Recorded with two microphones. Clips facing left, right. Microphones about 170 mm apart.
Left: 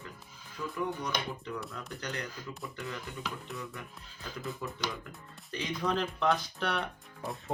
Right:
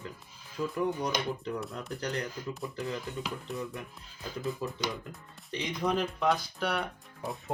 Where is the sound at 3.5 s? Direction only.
20° right (ahead or behind); by 7.5 s centre (ahead or behind).